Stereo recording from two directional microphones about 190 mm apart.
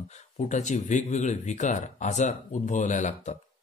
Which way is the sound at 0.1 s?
40° left (ahead or behind).